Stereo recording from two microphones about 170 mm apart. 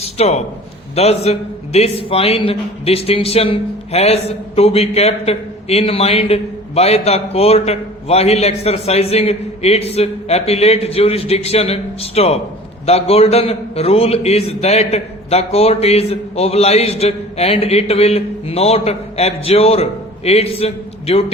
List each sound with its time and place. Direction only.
0.2 s a man's voice: 40° left (ahead or behind)